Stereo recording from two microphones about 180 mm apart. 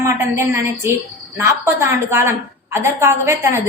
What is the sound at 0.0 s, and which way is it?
A woman's voice, 15° right (ahead or behind).